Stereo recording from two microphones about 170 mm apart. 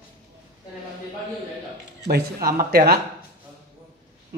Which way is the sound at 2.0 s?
60° right (ahead or behind).